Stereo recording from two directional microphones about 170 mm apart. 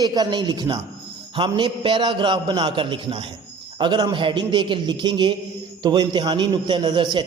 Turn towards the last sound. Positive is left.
turn(degrees=-25)  # may be behind; listen again after turning